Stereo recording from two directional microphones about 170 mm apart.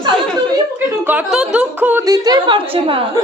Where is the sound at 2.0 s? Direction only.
20° right (ahead or behind).